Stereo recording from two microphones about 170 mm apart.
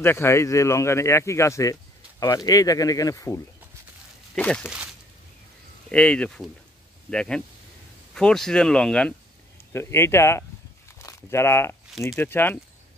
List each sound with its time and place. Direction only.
0.0 s speech: 15° left (ahead or behind)
4.4 s speech: 5° left (ahead or behind)
5.9 s speech: 5° left (ahead or behind)